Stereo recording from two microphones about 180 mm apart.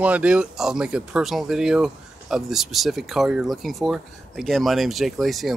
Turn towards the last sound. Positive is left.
turn(degrees=0)  # may be behind; listen again after turning